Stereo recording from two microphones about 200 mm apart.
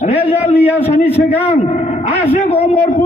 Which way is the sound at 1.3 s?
30° left (ahead or behind).